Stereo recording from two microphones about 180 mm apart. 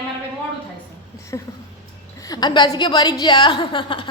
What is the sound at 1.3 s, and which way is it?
A woman's voice, 20° left (ahead or behind).